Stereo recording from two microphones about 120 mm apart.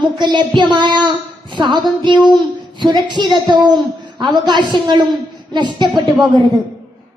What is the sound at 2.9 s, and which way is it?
A woman's voice, 40° right (ahead or behind).